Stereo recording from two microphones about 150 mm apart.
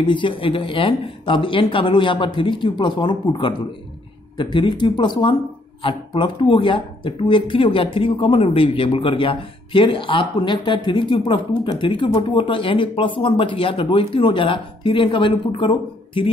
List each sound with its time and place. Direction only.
0.0 s speech: 35° left (ahead or behind)